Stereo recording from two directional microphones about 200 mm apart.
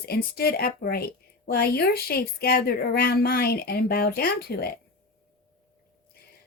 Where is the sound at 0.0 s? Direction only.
50° left (ahead or behind).